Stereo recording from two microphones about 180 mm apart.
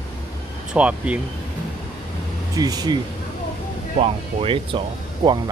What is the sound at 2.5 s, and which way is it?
Speech, 20° right (ahead or behind).